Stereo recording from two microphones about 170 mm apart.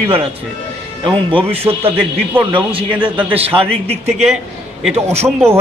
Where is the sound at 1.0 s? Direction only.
30° right (ahead or behind).